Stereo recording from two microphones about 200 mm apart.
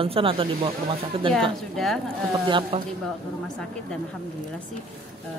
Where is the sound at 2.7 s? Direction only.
30° right (ahead or behind).